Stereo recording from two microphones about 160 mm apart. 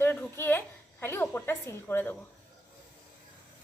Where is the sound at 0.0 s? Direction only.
10° left (ahead or behind).